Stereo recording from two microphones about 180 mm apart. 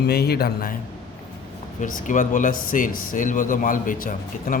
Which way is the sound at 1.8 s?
45° left (ahead or behind).